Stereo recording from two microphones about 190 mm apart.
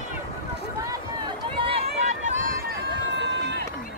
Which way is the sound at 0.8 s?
25° right (ahead or behind).